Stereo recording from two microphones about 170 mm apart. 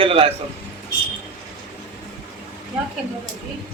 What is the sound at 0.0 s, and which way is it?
Speech, 35° right (ahead or behind).